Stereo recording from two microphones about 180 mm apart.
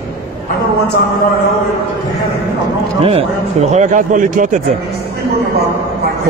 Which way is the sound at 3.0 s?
35° right (ahead or behind).